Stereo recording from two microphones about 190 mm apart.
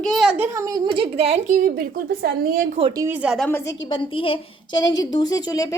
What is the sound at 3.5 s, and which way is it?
Speech, 15° left (ahead or behind).